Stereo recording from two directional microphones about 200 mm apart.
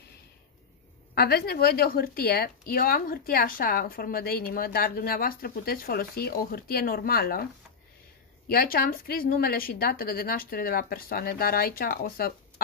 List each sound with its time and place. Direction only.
1.1 s a woman's voice: 50° left (ahead or behind)
8.5 s a woman's voice: 50° left (ahead or behind)